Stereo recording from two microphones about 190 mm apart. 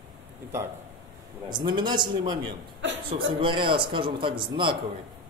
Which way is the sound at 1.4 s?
25° right (ahead or behind).